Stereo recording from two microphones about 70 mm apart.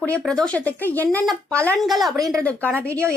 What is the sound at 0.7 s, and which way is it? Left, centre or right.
A woman's voice, left.